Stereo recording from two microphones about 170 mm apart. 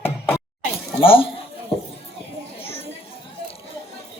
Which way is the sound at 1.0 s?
30° left (ahead or behind).